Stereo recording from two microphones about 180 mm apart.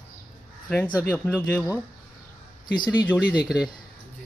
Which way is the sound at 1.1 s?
10° left (ahead or behind).